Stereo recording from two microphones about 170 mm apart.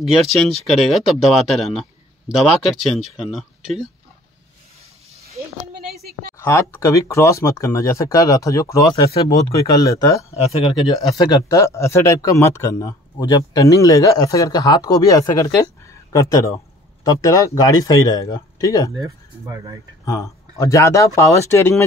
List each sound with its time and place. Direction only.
0.7 s speech: centre (ahead or behind)
6.3 s speech: 15° left (ahead or behind)
9.1 s speech: 35° left (ahead or behind)
9.6 s speech: 20° left (ahead or behind)
18.9 s speech: 20° right (ahead or behind)
20.1 s speech: 20° left (ahead or behind)